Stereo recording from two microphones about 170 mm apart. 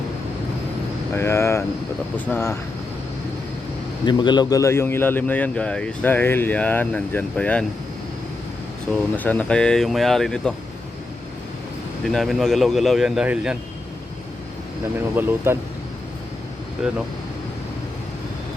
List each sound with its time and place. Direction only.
1.1 s a man's voice: 15° left (ahead or behind)
4.0 s a man's voice: 25° left (ahead or behind); by 7.6 s 5° left (ahead or behind)
9.1 s speech: 10° left (ahead or behind)
12.0 s speech: centre (ahead or behind)
15.1 s speech: 10° right (ahead or behind)
16.8 s speech: 5° right (ahead or behind)